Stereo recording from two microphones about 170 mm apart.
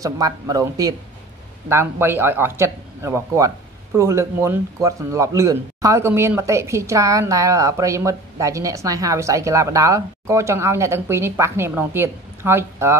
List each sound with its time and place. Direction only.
0.0 s speech: 20° right (ahead or behind)